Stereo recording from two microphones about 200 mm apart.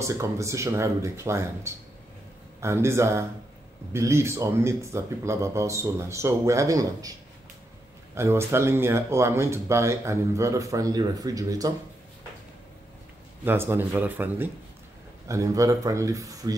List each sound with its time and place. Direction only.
0.0 s speech: 15° right (ahead or behind)
13.4 s speech: 10° right (ahead or behind)